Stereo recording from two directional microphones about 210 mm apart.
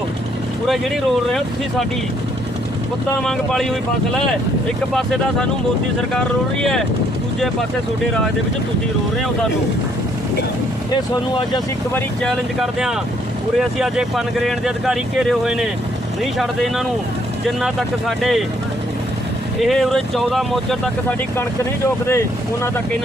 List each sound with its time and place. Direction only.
3.2 s speech: centre (ahead or behind)
4.9 s speech: centre (ahead or behind)
11.1 s speech: 20° left (ahead or behind)
11.9 s speech: centre (ahead or behind)
19.5 s speech: centre (ahead or behind)